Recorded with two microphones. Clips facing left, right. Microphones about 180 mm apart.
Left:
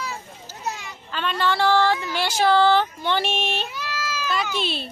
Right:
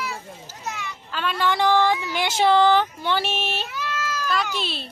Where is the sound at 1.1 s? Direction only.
5° right (ahead or behind).